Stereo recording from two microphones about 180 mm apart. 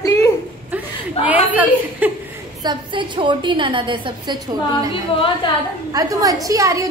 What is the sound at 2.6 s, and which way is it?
A woman's voice, 25° right (ahead or behind).